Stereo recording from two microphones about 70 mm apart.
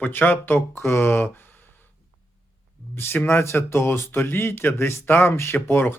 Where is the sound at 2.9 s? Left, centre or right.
Left.